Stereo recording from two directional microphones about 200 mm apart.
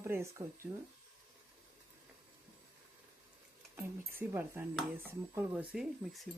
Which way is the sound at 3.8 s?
10° right (ahead or behind).